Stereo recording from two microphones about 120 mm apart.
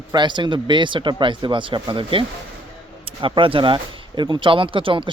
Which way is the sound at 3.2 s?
45° right (ahead or behind).